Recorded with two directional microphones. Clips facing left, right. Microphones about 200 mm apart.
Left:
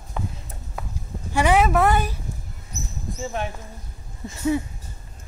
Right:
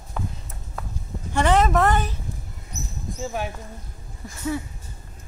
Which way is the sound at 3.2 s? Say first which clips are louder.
Even; 5° right (ahead or behind).